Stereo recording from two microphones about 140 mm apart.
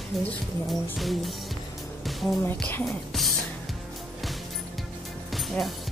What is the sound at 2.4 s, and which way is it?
Speech, 15° left (ahead or behind).